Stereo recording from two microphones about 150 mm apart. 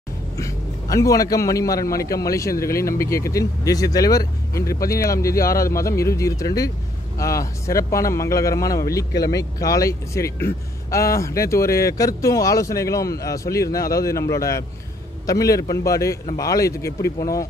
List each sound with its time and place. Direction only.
0.4 s speech: 20° left (ahead or behind)